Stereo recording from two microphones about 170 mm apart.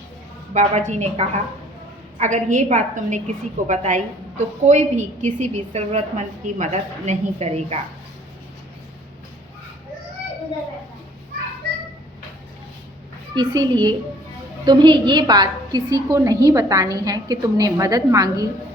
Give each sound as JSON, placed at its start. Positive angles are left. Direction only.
{"t": 0.5, "sound": "a woman's voice", "side_deg": -45}
{"t": 13.3, "sound": "a woman's voice", "side_deg": -25}